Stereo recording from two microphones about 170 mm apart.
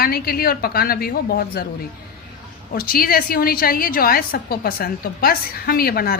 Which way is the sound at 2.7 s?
60° left (ahead or behind).